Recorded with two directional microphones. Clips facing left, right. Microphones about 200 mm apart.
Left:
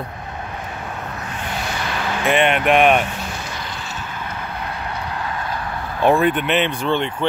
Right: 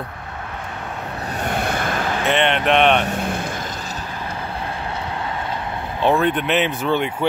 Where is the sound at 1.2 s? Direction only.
40° right (ahead or behind).